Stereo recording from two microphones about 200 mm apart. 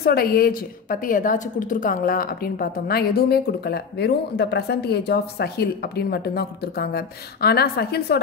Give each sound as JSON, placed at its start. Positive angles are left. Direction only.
{"t": 0.0, "sound": "a woman's voice", "side_deg": 50}